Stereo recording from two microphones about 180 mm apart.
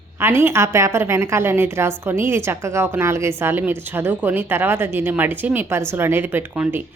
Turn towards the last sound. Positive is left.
turn(degrees=-10)  # may be behind; listen again after turning